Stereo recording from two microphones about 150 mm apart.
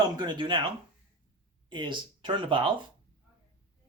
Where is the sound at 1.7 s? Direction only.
30° right (ahead or behind).